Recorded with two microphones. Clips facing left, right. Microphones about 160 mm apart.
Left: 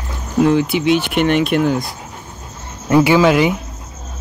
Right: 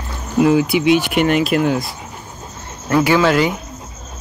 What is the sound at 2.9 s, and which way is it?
Speech, 15° left (ahead or behind).